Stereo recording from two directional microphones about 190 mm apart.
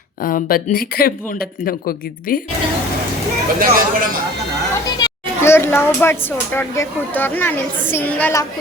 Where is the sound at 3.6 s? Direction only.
45° right (ahead or behind).